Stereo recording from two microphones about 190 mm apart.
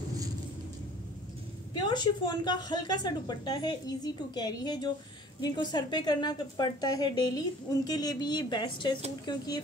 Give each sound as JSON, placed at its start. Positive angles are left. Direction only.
{"t": 1.7, "sound": "a woman's voice", "side_deg": 20}